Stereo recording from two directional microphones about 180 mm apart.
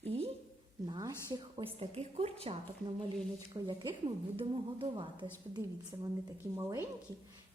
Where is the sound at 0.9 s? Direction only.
20° right (ahead or behind).